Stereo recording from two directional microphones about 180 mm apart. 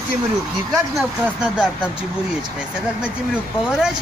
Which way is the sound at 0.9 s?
5° right (ahead or behind).